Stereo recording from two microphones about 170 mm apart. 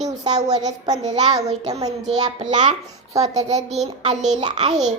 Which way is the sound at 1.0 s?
20° right (ahead or behind).